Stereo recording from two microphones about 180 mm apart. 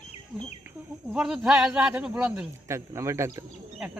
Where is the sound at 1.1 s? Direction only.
5° right (ahead or behind).